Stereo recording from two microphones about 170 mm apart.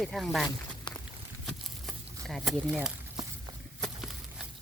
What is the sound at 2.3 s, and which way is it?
Speech, centre (ahead or behind).